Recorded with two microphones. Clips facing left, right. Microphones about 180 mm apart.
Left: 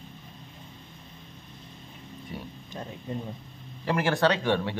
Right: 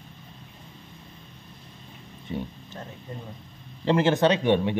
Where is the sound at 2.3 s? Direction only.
20° right (ahead or behind).